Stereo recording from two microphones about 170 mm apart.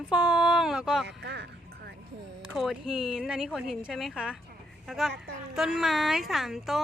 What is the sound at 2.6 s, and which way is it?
A woman's voice, centre (ahead or behind).